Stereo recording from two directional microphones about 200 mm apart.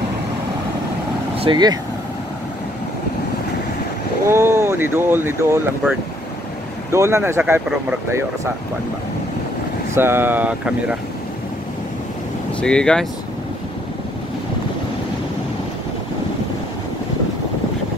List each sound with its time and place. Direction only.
1.3 s speech: 25° right (ahead or behind)
4.3 s speech: 10° right (ahead or behind)
9.9 s speech: 10° right (ahead or behind)
12.5 s speech: 5° left (ahead or behind)